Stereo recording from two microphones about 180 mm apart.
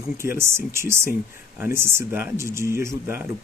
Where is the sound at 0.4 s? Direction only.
15° right (ahead or behind).